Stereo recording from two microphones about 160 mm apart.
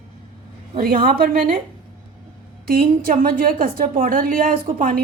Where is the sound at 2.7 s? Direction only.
65° right (ahead or behind).